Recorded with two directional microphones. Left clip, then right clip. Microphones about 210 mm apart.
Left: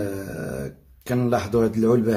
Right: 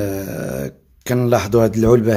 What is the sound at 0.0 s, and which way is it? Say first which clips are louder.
Speech: right 6 dB; 40° right (ahead or behind).